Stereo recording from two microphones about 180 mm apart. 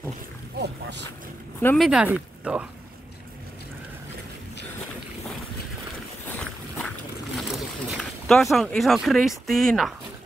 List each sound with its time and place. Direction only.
0.6 s boat: 70° right (ahead or behind)
1.8 s speech: 5° right (ahead or behind)
7.3 s boat: centre (ahead or behind)
9.5 s speech: centre (ahead or behind)